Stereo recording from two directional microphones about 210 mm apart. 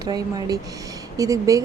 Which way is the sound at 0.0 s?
20° right (ahead or behind).